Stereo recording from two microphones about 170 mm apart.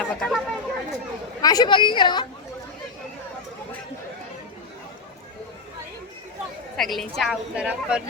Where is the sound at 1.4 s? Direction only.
25° left (ahead or behind).